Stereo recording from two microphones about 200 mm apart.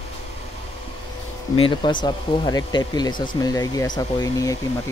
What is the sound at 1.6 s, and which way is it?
Speech, 25° left (ahead or behind).